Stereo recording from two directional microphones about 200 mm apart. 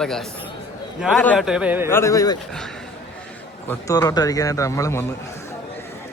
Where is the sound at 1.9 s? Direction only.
15° left (ahead or behind).